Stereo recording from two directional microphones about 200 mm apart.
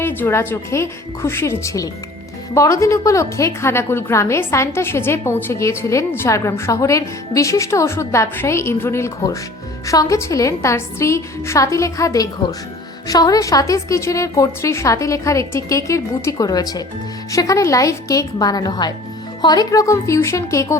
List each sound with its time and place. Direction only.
0.0 s a woman's voice: 10° left (ahead or behind)